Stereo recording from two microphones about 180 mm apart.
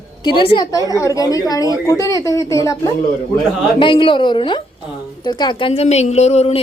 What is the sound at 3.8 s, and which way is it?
A woman's voice, 25° left (ahead or behind).